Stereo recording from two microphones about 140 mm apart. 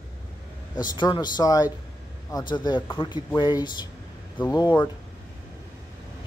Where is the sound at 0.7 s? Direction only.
30° left (ahead or behind).